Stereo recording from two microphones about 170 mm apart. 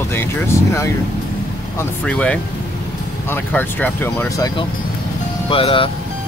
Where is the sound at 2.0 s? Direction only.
5° left (ahead or behind).